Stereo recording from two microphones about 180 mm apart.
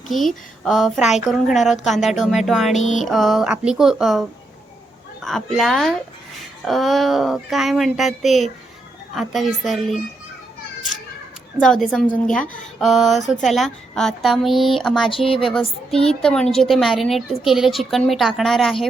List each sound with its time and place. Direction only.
0.1 s a woman's voice: centre (ahead or behind)
11.6 s a woman's voice: centre (ahead or behind)
15.1 s a woman's voice: 30° left (ahead or behind)
16.0 s a woman's voice: 5° left (ahead or behind)